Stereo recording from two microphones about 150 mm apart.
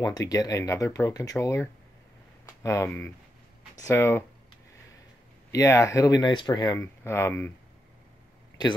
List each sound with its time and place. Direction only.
0.0 s speech: 25° left (ahead or behind)
5.5 s speech: 20° left (ahead or behind)